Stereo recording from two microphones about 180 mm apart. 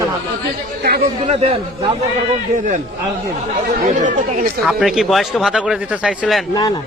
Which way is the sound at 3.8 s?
45° right (ahead or behind).